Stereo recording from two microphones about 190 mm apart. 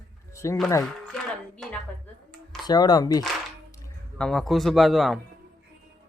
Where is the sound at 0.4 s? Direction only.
15° left (ahead or behind).